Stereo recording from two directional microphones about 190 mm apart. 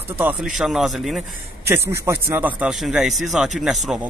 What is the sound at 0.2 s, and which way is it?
Speech, 10° right (ahead or behind).